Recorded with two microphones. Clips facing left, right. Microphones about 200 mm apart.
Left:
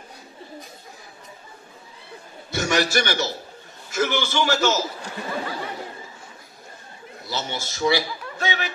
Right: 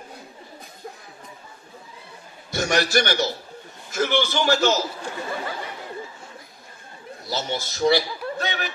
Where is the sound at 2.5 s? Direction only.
45° right (ahead or behind).